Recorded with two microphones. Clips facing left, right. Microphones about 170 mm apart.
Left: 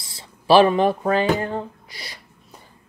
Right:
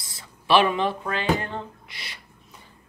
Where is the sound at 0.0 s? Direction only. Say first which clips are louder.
Left 2 dB; 30° left (ahead or behind).